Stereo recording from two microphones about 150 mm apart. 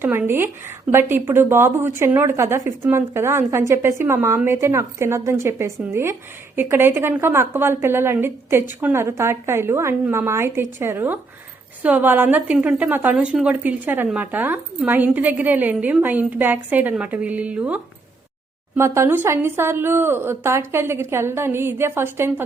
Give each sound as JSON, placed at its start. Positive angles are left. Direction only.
{"t": 0.0, "sound": "a woman's voice", "side_deg": -15}
{"t": 18.8, "sound": "a woman's voice", "side_deg": -15}